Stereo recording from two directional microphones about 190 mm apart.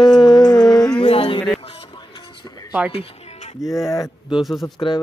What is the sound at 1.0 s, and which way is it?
Speech, 30° left (ahead or behind).